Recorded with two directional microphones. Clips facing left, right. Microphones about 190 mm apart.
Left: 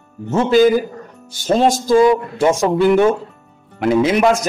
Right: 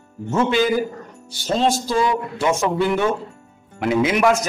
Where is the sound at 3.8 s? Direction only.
30° left (ahead or behind).